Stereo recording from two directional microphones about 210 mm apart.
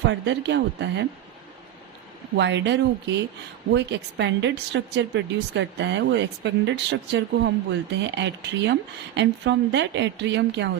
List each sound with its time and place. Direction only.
0.0 s speech: 55° right (ahead or behind)
2.3 s speech: 55° right (ahead or behind)